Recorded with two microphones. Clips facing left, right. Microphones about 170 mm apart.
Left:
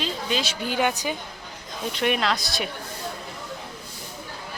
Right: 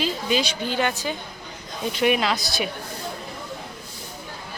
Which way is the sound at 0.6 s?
10° left (ahead or behind).